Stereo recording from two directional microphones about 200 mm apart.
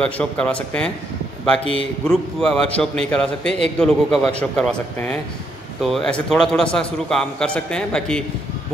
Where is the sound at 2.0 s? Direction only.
Centre (ahead or behind).